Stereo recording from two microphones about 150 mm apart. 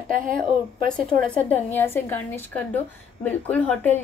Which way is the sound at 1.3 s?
10° left (ahead or behind).